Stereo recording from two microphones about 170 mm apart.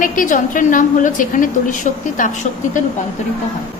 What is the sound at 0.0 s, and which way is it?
A woman's voice, 50° left (ahead or behind).